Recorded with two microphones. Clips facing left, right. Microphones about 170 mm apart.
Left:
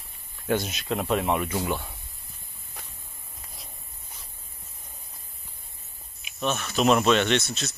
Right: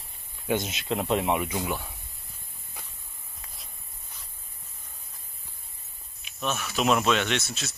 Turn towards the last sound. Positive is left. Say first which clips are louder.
# left 5 dB
turn(degrees=-5)  # may be behind; listen again after turning